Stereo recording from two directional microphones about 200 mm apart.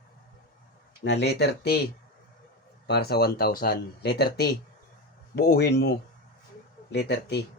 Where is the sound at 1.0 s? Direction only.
55° left (ahead or behind).